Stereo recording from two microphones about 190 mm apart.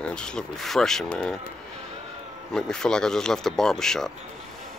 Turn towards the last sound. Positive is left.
turn(degrees=0)  # may be behind; listen again after turning